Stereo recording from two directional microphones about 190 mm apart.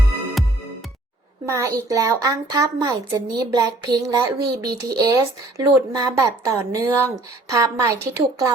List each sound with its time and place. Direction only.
1.5 s speech: 15° right (ahead or behind)